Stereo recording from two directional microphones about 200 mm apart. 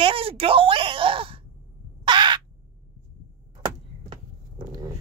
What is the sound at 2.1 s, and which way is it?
Crow, 25° right (ahead or behind).